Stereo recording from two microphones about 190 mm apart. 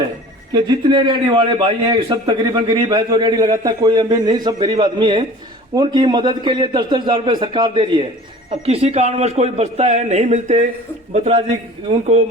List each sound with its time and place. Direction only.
0.5 s a man's voice: 25° right (ahead or behind)